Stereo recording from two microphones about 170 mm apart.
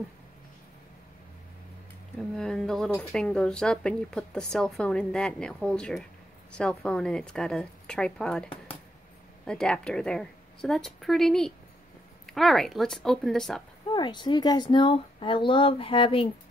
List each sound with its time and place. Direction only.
2.3 s speech: 5° left (ahead or behind)
13.9 s speech: 25° left (ahead or behind)